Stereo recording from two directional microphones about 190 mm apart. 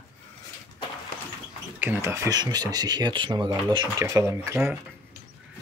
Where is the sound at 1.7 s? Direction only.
10° right (ahead or behind).